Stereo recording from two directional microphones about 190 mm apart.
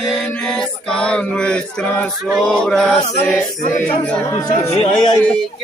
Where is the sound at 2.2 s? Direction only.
5° left (ahead or behind).